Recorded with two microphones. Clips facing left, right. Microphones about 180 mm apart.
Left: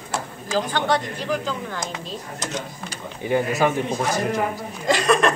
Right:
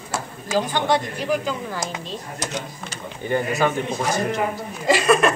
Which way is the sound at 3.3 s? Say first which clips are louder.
Left 1 dB; 5° left (ahead or behind).